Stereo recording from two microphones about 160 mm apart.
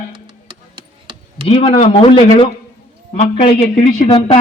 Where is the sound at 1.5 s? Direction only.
35° left (ahead or behind).